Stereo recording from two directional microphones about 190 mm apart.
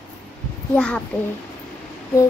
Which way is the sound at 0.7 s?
5° left (ahead or behind).